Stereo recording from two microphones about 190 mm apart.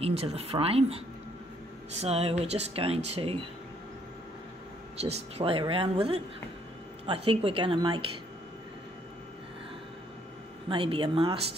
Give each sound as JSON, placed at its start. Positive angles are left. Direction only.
{"t": 0.0, "sound": "speech", "side_deg": -35}
{"t": 5.0, "sound": "speech", "side_deg": -30}
{"t": 10.7, "sound": "speech", "side_deg": -25}